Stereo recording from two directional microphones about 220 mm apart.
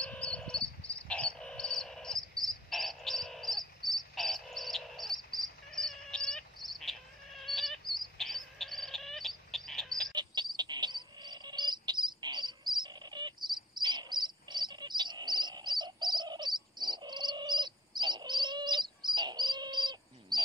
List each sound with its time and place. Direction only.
0.0 s frog: 5° left (ahead or behind)
5.7 s bird: centre (ahead or behind)
10.1 s insect: 20° right (ahead or behind)